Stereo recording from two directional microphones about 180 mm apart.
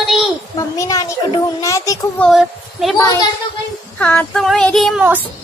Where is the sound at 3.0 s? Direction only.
20° left (ahead or behind).